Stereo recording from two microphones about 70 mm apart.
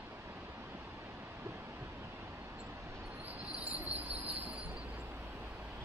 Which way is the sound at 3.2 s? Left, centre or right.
Centre.